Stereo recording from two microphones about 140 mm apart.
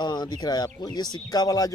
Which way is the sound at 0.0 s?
30° left (ahead or behind).